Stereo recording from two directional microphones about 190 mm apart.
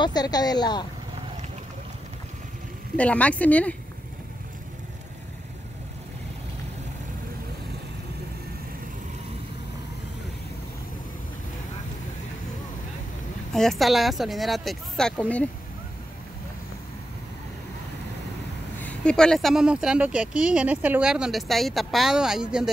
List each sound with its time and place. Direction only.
0.0 s speech: 20° left (ahead or behind)
3.0 s speech: 5° left (ahead or behind)
13.5 s speech: centre (ahead or behind)
18.8 s speech: 5° left (ahead or behind)